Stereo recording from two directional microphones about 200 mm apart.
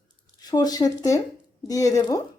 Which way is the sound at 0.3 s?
20° left (ahead or behind).